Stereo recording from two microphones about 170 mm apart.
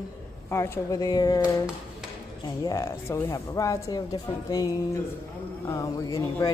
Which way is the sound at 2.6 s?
15° left (ahead or behind).